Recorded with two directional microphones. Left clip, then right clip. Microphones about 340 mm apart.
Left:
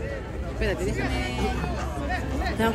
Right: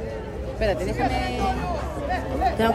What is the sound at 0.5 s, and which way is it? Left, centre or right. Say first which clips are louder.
Speech: right 4 dB; right.